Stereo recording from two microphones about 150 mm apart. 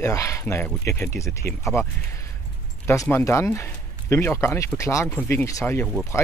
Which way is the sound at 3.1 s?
15° left (ahead or behind).